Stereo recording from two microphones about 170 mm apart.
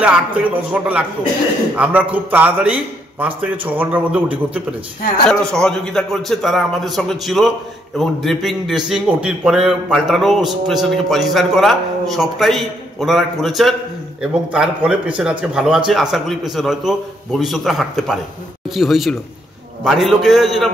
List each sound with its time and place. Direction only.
0.0 s a man's voice: 10° right (ahead or behind)
5.3 s a man's voice: 5° left (ahead or behind)